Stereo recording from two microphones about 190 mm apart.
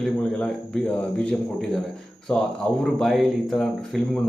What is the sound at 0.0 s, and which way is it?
Speech, 5° left (ahead or behind).